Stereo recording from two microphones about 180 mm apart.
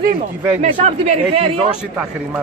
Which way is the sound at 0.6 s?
40° right (ahead or behind).